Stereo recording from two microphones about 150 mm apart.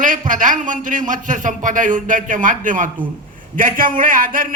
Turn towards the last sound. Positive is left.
turn(degrees=-65)  # may be behind; listen again after turning